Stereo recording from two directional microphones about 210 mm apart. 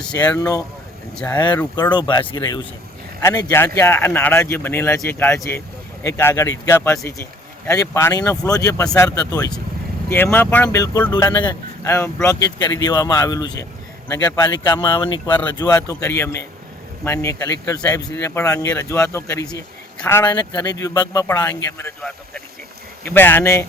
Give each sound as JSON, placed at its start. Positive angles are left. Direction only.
{"t": 0.3, "sound": "speech", "side_deg": 15}
{"t": 1.1, "sound": "speech", "side_deg": 5}
{"t": 1.4, "sound": "speech", "side_deg": 20}